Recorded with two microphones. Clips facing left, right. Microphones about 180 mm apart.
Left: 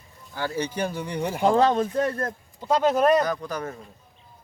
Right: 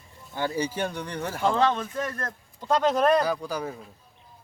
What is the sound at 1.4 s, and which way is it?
Speech, 40° left (ahead or behind).